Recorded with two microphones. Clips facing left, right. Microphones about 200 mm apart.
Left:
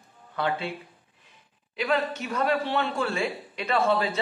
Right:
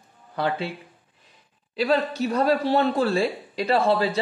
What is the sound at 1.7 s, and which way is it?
A man's voice, 35° right (ahead or behind).